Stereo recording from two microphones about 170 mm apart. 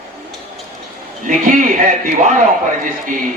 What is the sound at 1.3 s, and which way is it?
A man's voice, 50° right (ahead or behind).